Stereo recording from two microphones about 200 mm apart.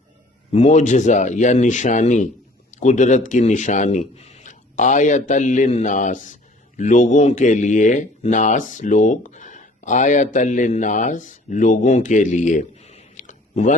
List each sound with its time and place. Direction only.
0.5 s a man's voice: 35° left (ahead or behind)